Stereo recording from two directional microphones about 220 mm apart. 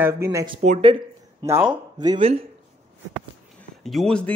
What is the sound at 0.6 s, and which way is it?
Speech, 30° right (ahead or behind).